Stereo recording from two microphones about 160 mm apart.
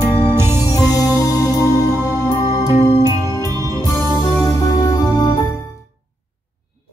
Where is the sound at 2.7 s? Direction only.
45° left (ahead or behind).